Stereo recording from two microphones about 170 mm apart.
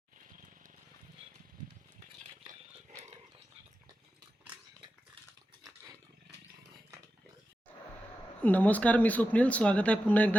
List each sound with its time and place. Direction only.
2.5 s roaring cats: 45° right (ahead or behind)
8.4 s speech: 10° left (ahead or behind)